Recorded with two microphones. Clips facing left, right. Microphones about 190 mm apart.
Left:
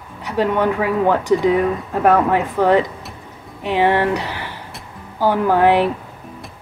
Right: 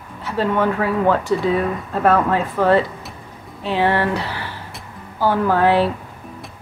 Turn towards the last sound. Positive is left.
turn(degrees=15)  # may be behind; listen again after turning